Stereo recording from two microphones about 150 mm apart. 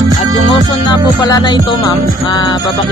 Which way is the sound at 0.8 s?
30° left (ahead or behind).